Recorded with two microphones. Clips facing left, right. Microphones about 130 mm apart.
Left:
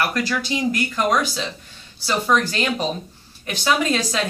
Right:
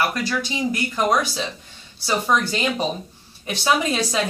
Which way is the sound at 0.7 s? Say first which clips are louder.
Even; 10° right (ahead or behind).